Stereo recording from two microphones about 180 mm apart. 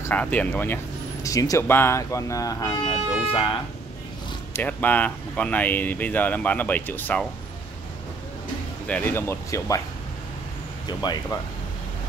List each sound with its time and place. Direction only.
0.0 s speech: 10° left (ahead or behind)
1.2 s speech: 20° left (ahead or behind)
4.6 s speech: 10° left (ahead or behind)
8.8 s speech: 10° left (ahead or behind)
11.0 s speech: 20° left (ahead or behind)